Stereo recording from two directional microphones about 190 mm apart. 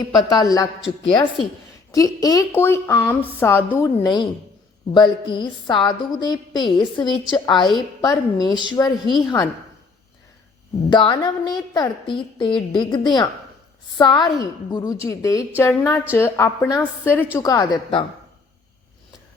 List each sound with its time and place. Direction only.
0.0 s a woman's voice: 20° left (ahead or behind)
4.0 s a woman's voice: 25° left (ahead or behind)
10.8 s a woman's voice: 25° left (ahead or behind)